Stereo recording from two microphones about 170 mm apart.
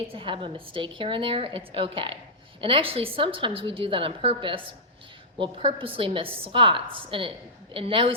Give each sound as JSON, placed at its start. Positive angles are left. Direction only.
{"t": 0.1, "sound": "a woman's voice", "side_deg": -30}